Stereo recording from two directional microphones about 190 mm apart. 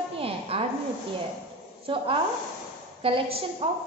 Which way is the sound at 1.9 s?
25° right (ahead or behind).